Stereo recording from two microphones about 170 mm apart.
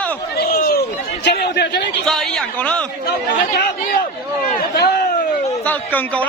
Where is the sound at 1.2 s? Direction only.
85° left.